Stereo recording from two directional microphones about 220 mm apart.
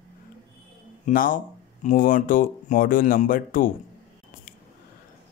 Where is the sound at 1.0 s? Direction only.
40° left (ahead or behind).